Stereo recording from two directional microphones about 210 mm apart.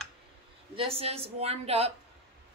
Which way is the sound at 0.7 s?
25° right (ahead or behind).